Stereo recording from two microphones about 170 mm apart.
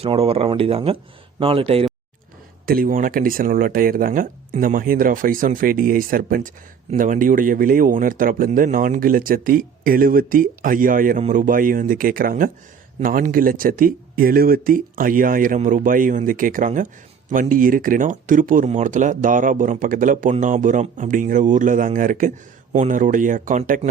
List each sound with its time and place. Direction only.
0.0 s speech: 35° right (ahead or behind)
2.6 s speech: 55° right (ahead or behind)